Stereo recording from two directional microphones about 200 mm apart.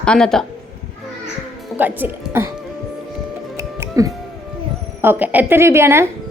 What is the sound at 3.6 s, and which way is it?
Music, 15° right (ahead or behind).